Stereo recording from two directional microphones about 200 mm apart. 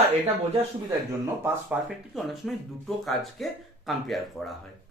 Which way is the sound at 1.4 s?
5° right (ahead or behind).